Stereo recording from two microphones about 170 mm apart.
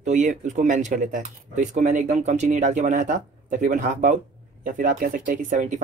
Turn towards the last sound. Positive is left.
turn(degrees=-45)  # may be behind; listen again after turning